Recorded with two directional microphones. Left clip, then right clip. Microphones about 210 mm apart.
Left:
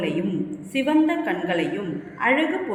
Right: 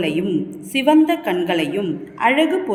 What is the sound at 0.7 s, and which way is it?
A woman's voice, 55° right (ahead or behind).